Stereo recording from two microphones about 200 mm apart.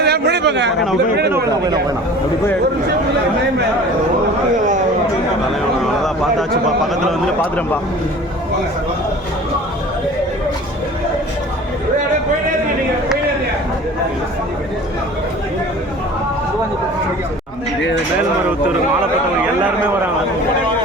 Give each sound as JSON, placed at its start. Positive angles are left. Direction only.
{"t": 0.0, "sound": "a man's voice", "side_deg": -55}
{"t": 6.7, "sound": "a man's voice", "side_deg": 0}